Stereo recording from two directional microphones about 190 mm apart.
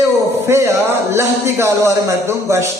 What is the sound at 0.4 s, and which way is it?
A man's voice, 15° right (ahead or behind).